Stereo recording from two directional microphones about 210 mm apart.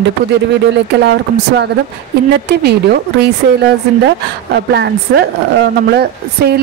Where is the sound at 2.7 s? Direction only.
50° right (ahead or behind).